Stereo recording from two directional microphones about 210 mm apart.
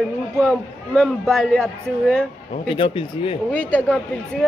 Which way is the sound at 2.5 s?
25° left (ahead or behind).